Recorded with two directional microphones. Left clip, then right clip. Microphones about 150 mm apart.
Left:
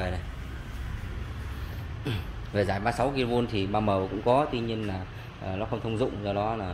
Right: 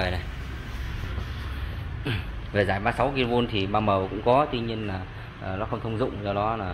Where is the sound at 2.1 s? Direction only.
25° left (ahead or behind).